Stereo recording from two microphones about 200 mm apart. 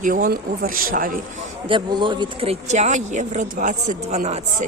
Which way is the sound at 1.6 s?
25° right (ahead or behind).